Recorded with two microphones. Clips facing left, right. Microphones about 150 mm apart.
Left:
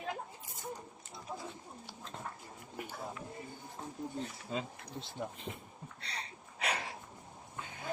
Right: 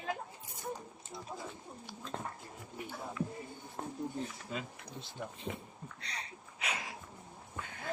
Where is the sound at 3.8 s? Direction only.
60° right (ahead or behind).